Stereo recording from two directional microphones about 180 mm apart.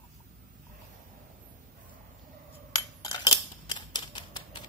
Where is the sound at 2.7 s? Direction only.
20° left (ahead or behind).